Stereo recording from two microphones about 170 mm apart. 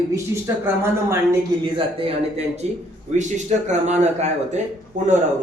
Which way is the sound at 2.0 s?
35° right (ahead or behind).